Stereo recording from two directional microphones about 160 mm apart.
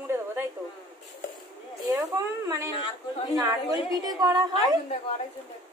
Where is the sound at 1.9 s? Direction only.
20° right (ahead or behind).